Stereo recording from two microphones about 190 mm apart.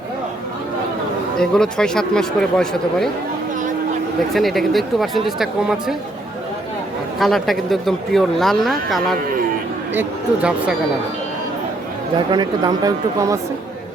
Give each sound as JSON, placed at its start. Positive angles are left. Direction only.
{"t": 1.4, "sound": "speech", "side_deg": 5}
{"t": 4.4, "sound": "speech", "side_deg": 0}
{"t": 7.2, "sound": "speech", "side_deg": 0}
{"t": 12.3, "sound": "speech", "side_deg": -20}